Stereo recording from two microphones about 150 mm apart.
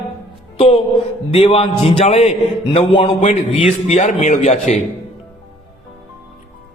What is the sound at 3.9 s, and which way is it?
Speech, 55° left (ahead or behind).